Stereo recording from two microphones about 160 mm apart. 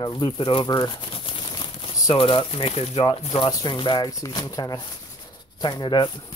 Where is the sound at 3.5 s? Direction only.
30° left (ahead or behind).